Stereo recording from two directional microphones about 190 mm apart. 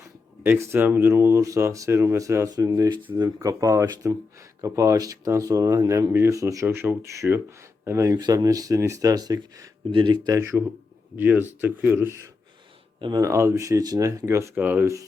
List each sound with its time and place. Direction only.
0.4 s speech: 10° right (ahead or behind)